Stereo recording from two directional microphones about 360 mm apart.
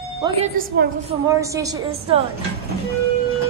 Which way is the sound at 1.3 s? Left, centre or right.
Centre.